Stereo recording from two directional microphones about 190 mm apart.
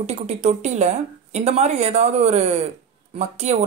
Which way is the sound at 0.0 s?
35° right (ahead or behind).